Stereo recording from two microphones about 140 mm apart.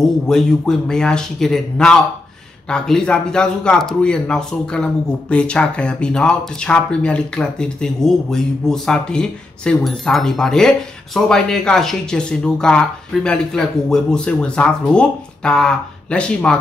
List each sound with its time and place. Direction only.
0.3 s speech: 5° left (ahead or behind)